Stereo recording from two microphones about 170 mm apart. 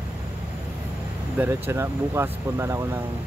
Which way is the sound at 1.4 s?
15° right (ahead or behind).